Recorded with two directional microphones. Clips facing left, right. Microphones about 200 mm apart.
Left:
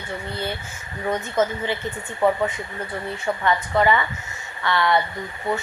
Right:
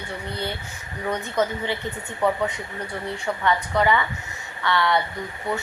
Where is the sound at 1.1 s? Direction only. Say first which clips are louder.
Left 2 dB; 20° left (ahead or behind).